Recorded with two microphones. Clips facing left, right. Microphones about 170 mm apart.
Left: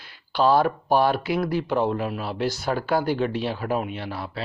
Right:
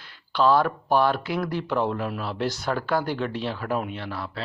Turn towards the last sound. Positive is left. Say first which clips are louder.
# left 1 dB
turn(degrees=10)  # may be behind; listen again after turning